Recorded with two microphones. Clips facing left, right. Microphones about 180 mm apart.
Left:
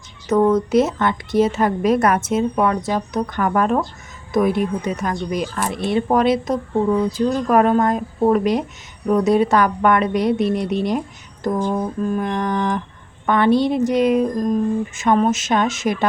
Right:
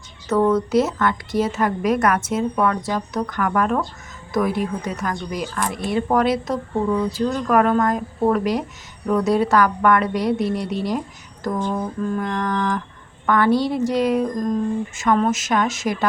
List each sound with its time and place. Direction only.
0.3 s a woman's voice: 20° left (ahead or behind)